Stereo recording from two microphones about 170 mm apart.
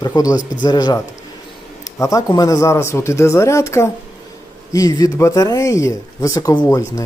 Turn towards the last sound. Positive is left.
turn(degrees=20)  # may be behind; listen again after turning